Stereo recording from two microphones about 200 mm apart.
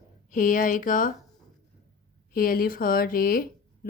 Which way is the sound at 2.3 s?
45° left (ahead or behind).